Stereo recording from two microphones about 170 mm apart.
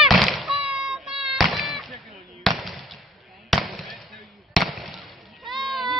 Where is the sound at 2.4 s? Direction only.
Centre (ahead or behind).